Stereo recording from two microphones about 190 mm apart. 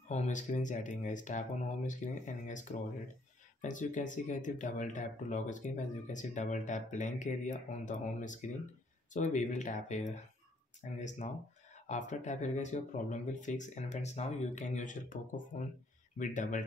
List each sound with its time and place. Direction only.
0.1 s speech: 40° left (ahead or behind)